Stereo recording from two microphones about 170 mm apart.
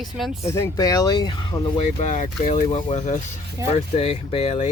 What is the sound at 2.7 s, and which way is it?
Speech, 30° left (ahead or behind).